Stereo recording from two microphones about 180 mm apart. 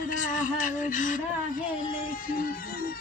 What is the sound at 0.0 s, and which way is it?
Speech, 45° left (ahead or behind).